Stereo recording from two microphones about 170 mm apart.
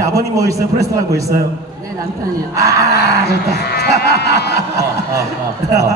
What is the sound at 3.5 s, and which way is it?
Sheep, 70° left (ahead or behind).